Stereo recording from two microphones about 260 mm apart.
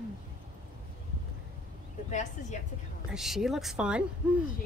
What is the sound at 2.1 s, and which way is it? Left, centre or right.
Speech, left.